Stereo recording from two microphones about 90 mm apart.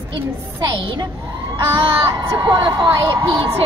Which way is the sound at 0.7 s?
70° right (ahead or behind).